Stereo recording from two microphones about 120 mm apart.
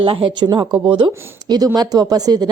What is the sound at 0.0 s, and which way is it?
A woman's voice, 45° right (ahead or behind).